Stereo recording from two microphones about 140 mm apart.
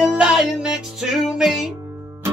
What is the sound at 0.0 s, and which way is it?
Music, 5° right (ahead or behind).